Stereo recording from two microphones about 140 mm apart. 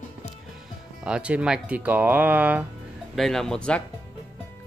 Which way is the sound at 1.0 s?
10° right (ahead or behind).